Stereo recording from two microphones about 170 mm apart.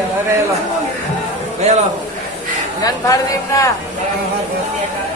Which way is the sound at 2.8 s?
20° left (ahead or behind).